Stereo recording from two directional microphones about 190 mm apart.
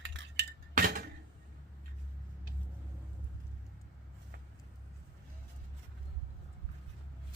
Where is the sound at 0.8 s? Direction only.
50° right (ahead or behind).